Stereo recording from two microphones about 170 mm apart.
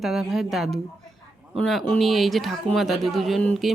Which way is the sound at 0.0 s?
Centre (ahead or behind).